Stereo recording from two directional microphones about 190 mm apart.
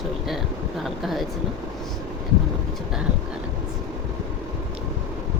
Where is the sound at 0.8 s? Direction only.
Centre (ahead or behind).